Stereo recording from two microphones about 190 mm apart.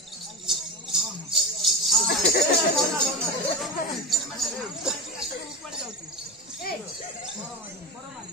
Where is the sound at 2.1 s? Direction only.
55° left (ahead or behind).